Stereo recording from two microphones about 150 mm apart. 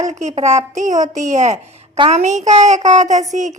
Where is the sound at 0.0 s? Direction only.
50° right (ahead or behind).